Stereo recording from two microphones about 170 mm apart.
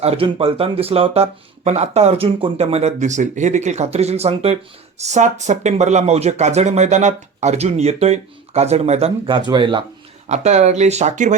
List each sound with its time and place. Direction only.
0.0 s speech: 35° right (ahead or behind)
10.2 s speech: 40° right (ahead or behind)